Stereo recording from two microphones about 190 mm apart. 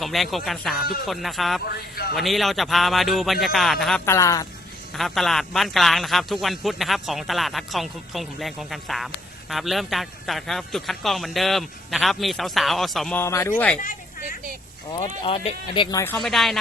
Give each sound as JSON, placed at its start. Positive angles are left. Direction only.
{"t": 0.0, "sound": "a man's voice", "side_deg": 0}
{"t": 1.6, "sound": "speech", "side_deg": 55}
{"t": 2.1, "sound": "a man's voice", "side_deg": 0}
{"t": 4.0, "sound": "a man's voice", "side_deg": 15}
{"t": 4.9, "sound": "a man's voice", "side_deg": 0}
{"t": 13.2, "sound": "a man's voice", "side_deg": 15}
{"t": 14.9, "sound": "speech", "side_deg": 25}
{"t": 16.1, "sound": "a man's voice", "side_deg": 0}